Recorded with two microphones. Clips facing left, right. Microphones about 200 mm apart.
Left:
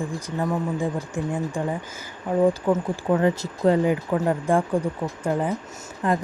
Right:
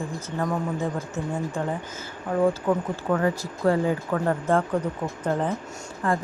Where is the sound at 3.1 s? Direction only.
20° left (ahead or behind).